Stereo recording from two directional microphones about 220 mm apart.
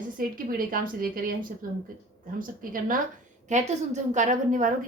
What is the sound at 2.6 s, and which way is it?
A woman's voice, 40° right (ahead or behind).